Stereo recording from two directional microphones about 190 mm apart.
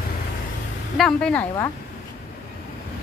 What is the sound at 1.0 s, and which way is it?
Speech, 5° left (ahead or behind).